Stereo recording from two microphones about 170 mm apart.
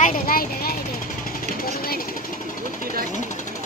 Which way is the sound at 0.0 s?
60° left (ahead or behind).